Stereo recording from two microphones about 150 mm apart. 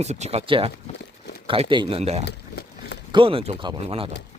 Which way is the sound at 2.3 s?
90° left.